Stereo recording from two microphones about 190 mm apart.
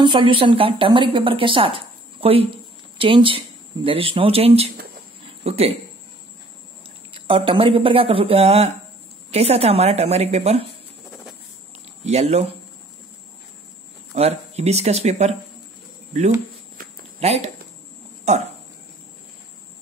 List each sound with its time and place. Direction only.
0.0 s a woman's voice: 25° right (ahead or behind)
7.2 s a woman's voice: 25° right (ahead or behind)
12.0 s speech: 35° right (ahead or behind)
14.1 s a woman's voice: 35° right (ahead or behind)
16.7 s a sound: 50° right (ahead or behind)
17.2 s speech: 35° right (ahead or behind)